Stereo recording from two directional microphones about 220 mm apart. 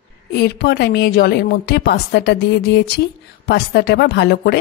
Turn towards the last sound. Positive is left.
turn(degrees=50)  # may be behind; listen again after turning